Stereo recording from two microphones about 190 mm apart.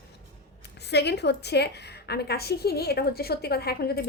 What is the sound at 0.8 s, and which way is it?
A woman's voice, 60° left (ahead or behind).